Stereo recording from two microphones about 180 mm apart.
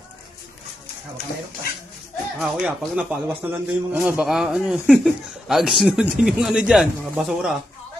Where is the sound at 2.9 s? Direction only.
5° right (ahead or behind).